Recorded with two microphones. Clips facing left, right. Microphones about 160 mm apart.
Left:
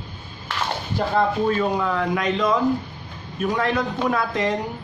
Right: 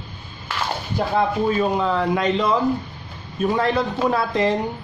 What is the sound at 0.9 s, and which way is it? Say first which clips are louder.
Speech: even; 15° right (ahead or behind).